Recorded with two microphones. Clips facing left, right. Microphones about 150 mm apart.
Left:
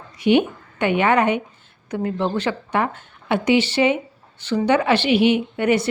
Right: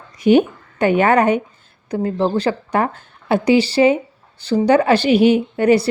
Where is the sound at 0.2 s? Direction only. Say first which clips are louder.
Right 4 dB; 40° right (ahead or behind).